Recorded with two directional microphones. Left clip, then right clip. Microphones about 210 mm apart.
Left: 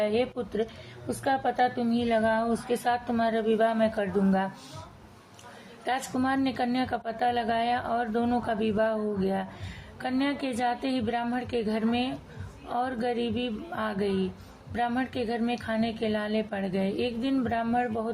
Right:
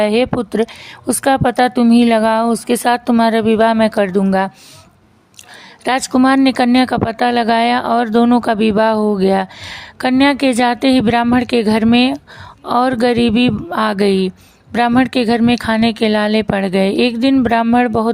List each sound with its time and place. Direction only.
0.0 s a woman's voice: 35° right (ahead or behind)
5.8 s a woman's voice: 45° right (ahead or behind)